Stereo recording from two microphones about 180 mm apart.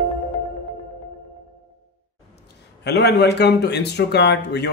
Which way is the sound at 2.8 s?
70° left (ahead or behind).